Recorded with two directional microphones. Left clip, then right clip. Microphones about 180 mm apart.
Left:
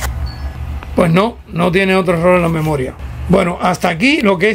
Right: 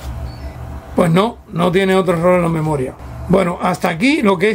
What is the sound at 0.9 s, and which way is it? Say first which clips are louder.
Speech: left 2 dB; centre (ahead or behind).